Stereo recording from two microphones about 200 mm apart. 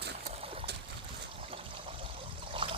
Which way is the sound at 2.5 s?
25° right (ahead or behind).